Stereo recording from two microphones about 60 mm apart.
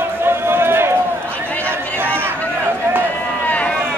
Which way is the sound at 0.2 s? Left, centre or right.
Right.